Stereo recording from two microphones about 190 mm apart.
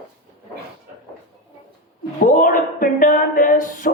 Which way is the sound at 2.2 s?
45° left (ahead or behind).